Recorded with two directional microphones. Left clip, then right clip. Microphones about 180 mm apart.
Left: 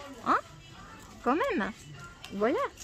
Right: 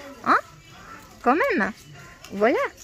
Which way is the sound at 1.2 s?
20° right (ahead or behind).